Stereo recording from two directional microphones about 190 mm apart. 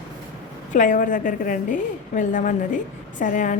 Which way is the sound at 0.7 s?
45° left (ahead or behind).